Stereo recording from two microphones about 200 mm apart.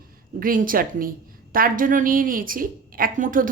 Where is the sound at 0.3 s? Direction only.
45° right (ahead or behind).